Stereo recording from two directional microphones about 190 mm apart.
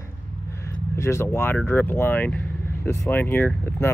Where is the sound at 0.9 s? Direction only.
15° left (ahead or behind).